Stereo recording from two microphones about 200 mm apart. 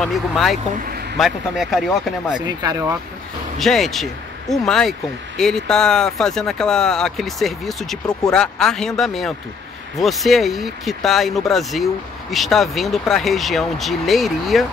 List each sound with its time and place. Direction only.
0.0 s speech: centre (ahead or behind)
0.8 s a sound: 50° right (ahead or behind)
1.1 s speech: centre (ahead or behind)
2.4 s speech: 20° right (ahead or behind)
3.5 s speech: centre (ahead or behind)